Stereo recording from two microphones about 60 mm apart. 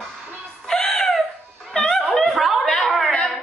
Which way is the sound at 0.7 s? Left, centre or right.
Centre.